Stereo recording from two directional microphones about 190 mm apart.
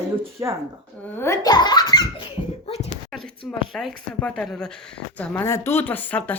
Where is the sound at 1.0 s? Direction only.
10° left (ahead or behind); by 2.9 s 30° left (ahead or behind).